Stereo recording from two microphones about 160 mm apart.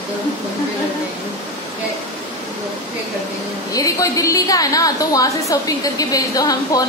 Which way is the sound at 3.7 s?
20° left (ahead or behind).